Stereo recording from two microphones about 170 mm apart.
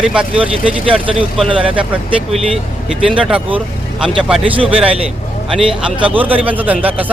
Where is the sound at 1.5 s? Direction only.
5° right (ahead or behind).